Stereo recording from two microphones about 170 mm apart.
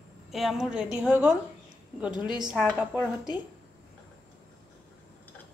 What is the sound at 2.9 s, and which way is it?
Speech, 25° left (ahead or behind).